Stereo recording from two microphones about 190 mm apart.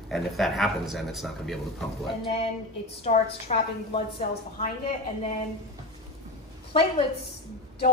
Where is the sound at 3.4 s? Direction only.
35° left (ahead or behind).